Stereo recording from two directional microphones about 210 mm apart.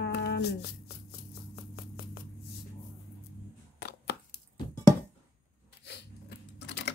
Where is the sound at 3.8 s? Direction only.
50° left (ahead or behind).